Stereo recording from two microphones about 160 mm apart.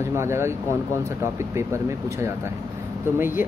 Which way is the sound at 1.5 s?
15° right (ahead or behind).